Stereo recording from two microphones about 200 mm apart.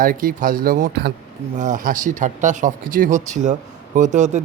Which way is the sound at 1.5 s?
40° right (ahead or behind).